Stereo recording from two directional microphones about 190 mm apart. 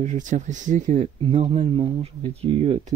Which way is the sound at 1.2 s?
30° right (ahead or behind).